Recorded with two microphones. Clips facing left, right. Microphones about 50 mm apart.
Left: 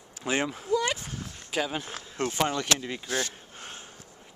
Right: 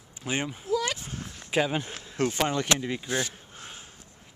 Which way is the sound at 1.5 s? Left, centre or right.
Centre.